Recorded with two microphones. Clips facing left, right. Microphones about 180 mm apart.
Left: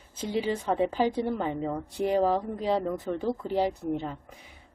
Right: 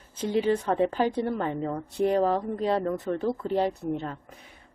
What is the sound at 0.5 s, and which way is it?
A woman's voice, 10° left (ahead or behind).